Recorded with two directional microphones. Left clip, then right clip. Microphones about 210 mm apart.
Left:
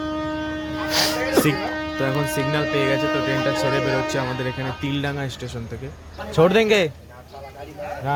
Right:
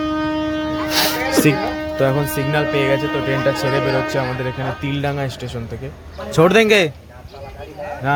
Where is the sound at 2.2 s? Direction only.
60° left (ahead or behind).